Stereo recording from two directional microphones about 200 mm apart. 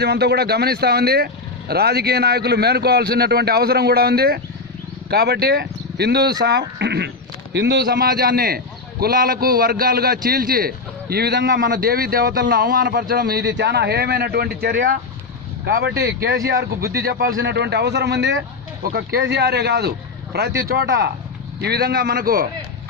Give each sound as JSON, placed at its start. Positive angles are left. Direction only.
{"t": 0.0, "sound": "a man's voice", "side_deg": -55}
{"t": 16.0, "sound": "a man's voice", "side_deg": -55}